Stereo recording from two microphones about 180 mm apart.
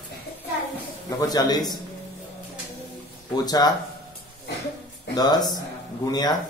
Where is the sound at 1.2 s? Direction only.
20° left (ahead or behind).